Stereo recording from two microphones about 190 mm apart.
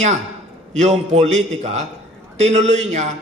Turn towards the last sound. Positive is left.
turn(degrees=-35)  # may be behind; listen again after turning